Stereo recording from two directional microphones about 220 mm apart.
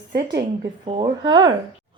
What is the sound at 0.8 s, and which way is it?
Speech, 20° right (ahead or behind).